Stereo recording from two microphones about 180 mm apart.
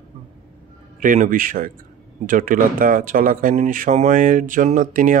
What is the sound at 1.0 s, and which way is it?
Speech, 45° right (ahead or behind).